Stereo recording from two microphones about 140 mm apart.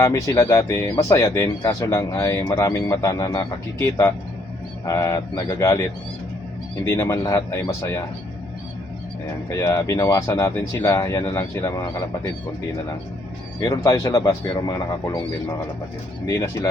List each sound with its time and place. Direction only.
0.0 s speech: 20° left (ahead or behind)
6.8 s speech: 20° left (ahead or behind)
9.5 s speech: 25° left (ahead or behind)
13.6 s speech: 25° left (ahead or behind)
16.2 s speech: 25° left (ahead or behind)